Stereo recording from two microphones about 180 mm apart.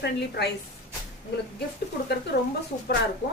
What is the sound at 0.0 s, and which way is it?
Speech, 65° left (ahead or behind).